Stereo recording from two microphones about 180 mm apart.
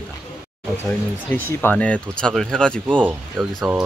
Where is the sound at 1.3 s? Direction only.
10° left (ahead or behind).